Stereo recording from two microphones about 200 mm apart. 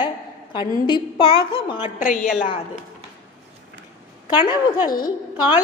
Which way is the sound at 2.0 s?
40° left (ahead or behind).